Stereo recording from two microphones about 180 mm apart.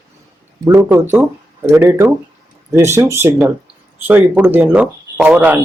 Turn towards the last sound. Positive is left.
turn(degrees=-10)  # may be behind; listen again after turning